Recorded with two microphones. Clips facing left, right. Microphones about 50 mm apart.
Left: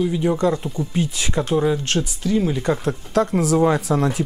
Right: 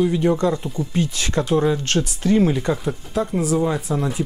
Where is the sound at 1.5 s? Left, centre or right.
Centre.